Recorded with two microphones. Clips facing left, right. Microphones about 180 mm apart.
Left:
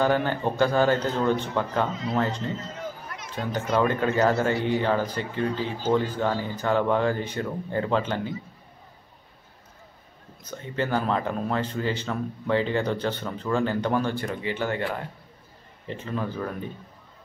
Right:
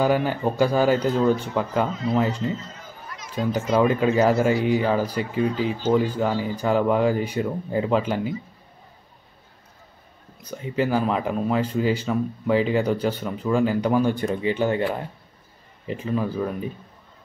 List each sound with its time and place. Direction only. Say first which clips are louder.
0.0 s speech: right 2 dB; 10° right (ahead or behind)
3.5 s speech: right 3 dB; 10° right (ahead or behind)
10.5 s speech: right 4 dB; 10° right (ahead or behind)
15.9 s speech: right 5 dB; 10° right (ahead or behind)